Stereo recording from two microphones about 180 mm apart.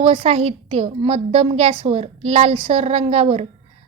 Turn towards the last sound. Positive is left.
turn(degrees=-35)  # may be behind; listen again after turning